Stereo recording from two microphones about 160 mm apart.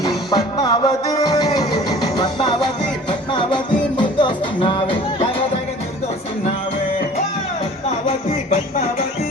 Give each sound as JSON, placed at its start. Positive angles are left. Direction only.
{"t": 0.0, "sound": "music", "side_deg": 25}